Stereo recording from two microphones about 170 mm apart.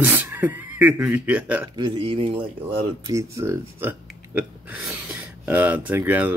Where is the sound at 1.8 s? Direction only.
30° right (ahead or behind).